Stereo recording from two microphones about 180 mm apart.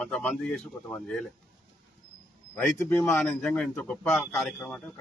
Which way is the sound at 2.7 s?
15° left (ahead or behind).